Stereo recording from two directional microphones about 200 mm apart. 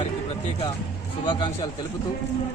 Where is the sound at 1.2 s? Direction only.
20° left (ahead or behind).